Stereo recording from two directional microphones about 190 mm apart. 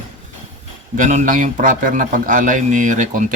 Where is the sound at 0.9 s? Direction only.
40° right (ahead or behind).